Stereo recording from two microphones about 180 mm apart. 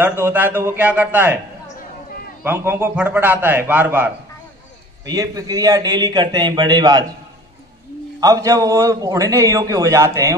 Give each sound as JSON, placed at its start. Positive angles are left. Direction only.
{"t": 0.2, "sound": "a man's voice", "side_deg": -10}
{"t": 2.4, "sound": "a man's voice", "side_deg": -10}
{"t": 5.0, "sound": "a man's voice", "side_deg": -20}
{"t": 8.2, "sound": "a man's voice", "side_deg": -20}